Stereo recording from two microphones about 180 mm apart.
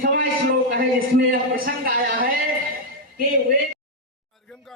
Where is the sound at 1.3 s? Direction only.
55° right (ahead or behind).